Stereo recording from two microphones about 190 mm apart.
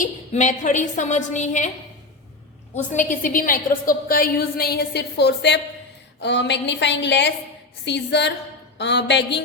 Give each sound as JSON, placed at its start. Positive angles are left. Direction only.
{"t": 0.0, "sound": "a woman's voice", "side_deg": 40}
{"t": 2.9, "sound": "a woman's voice", "side_deg": 45}